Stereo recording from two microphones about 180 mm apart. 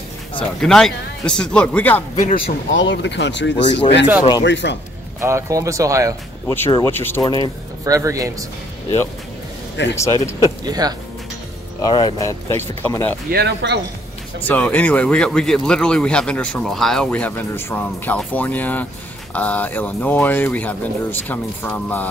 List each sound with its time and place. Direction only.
0.6 s a man's voice: 5° left (ahead or behind)
2.1 s speech: 40° left (ahead or behind)
2.7 s a man's voice: 90° left
5.2 s speech: 15° right (ahead or behind)
6.4 s speech: 15° left (ahead or behind)
7.2 s speech: 25° left (ahead or behind)
7.8 s a man's voice: 20° right (ahead or behind)
9.9 s speech: 15° left (ahead or behind)
10.6 s a man's voice: 20° right (ahead or behind)
11.8 s speech: 25° left (ahead or behind)
13.3 s speech: 65° right (ahead or behind)
14.4 s speech: 10° left (ahead or behind)